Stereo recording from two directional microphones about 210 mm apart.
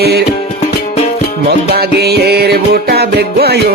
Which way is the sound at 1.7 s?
50° right (ahead or behind).